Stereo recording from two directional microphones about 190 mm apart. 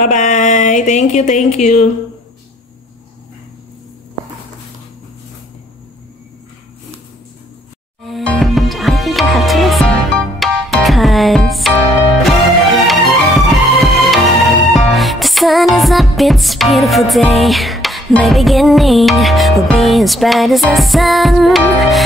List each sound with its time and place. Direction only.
0.0 s speech: 40° left (ahead or behind)
8.0 s music: centre (ahead or behind)
12.8 s music: centre (ahead or behind)